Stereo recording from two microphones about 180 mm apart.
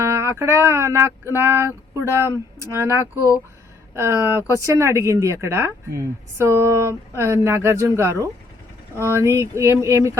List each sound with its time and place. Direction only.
0.0 s speech: 15° right (ahead or behind)
3.9 s speech: 15° right (ahead or behind)